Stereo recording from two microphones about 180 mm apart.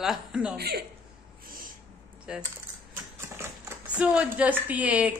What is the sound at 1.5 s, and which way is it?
Snort, 50° right (ahead or behind).